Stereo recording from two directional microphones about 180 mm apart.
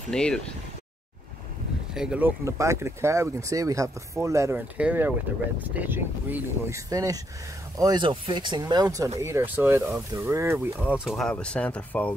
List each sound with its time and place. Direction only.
0.1 s speech: 5° left (ahead or behind)
2.0 s speech: 5° right (ahead or behind)
10.8 s speech: 5° right (ahead or behind)